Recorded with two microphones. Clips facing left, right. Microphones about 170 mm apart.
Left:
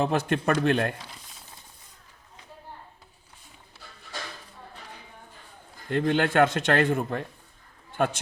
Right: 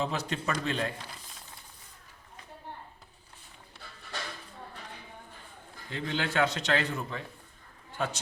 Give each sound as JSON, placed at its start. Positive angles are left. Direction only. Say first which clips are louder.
{"t": 0.0, "sound": "a man's voice", "louder": "left 7 dB", "side_deg": 55}
{"t": 5.9, "sound": "a man's voice", "louder": "left 9 dB", "side_deg": 55}